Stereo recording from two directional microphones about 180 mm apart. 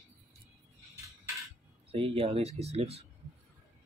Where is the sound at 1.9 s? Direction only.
30° right (ahead or behind).